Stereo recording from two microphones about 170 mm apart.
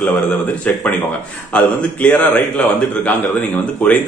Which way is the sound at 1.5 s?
10° left (ahead or behind).